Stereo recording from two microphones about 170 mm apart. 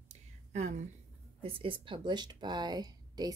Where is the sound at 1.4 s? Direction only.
30° right (ahead or behind).